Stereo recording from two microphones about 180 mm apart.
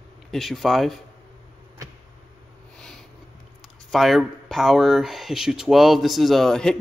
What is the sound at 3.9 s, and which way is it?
Speech, centre (ahead or behind).